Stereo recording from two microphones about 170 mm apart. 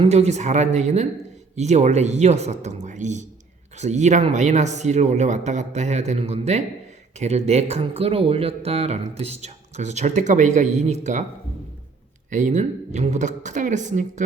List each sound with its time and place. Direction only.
0.0 s speech: 40° right (ahead or behind)
12.3 s speech: 45° right (ahead or behind)